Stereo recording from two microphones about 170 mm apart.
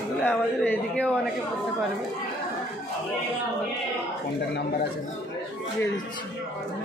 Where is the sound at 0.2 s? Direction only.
10° left (ahead or behind).